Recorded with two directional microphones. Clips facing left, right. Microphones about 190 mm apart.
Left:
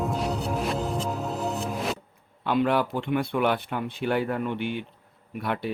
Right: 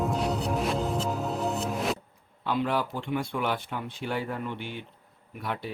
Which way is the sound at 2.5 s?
65° left (ahead or behind).